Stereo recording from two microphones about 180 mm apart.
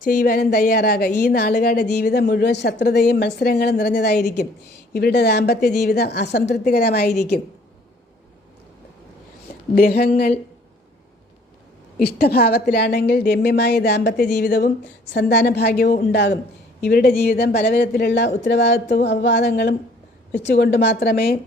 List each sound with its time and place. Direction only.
0.0 s a woman's voice: 50° left (ahead or behind)
9.7 s a woman's voice: 60° left (ahead or behind)
11.9 s a woman's voice: 60° left (ahead or behind)